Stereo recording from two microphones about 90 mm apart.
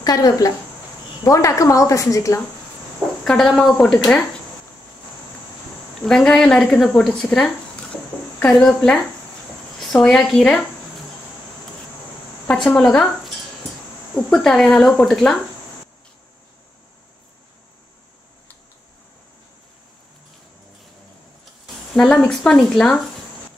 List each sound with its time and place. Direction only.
0.0 s a woman's voice: 45° left (ahead or behind)
3.3 s speech: 5° left (ahead or behind)
6.0 s a woman's voice: 5° left (ahead or behind)
12.4 s a woman's voice: 5° left (ahead or behind)
21.9 s speech: 5° left (ahead or behind)